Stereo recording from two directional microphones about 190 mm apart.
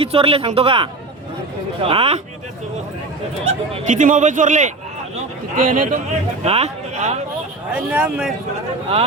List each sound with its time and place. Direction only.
0.0 s speech: 30° right (ahead or behind)
3.4 s a man's voice: 40° right (ahead or behind)
6.4 s speech: 35° right (ahead or behind)
7.7 s speech: 5° right (ahead or behind)